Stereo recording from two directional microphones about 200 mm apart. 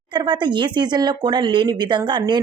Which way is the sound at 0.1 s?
25° right (ahead or behind).